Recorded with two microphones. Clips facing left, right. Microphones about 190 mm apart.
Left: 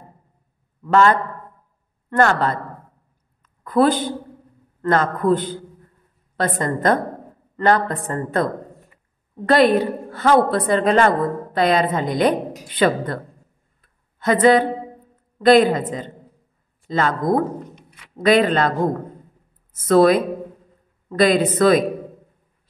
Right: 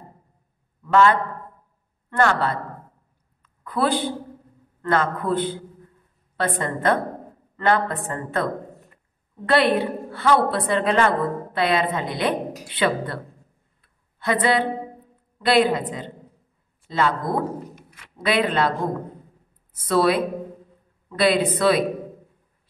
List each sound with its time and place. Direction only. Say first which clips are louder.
0.8 s a man's voice: left 2 dB; 45° left (ahead or behind)
9.5 s a woman's voice: left 4 dB; 40° left (ahead or behind)
13.7 s a sound: left 1 dB; 45° left (ahead or behind)
15.3 s a woman's voice: left 5 dB; 45° left (ahead or behind)
18.1 s a woman's voice: left 6 dB; 45° left (ahead or behind)
19.8 s a woman's voice: left 5 dB; 45° left (ahead or behind)